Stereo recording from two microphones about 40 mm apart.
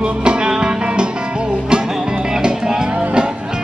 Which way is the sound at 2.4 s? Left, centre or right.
Right.